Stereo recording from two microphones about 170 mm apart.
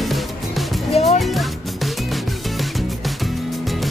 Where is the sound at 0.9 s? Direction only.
40° left (ahead or behind).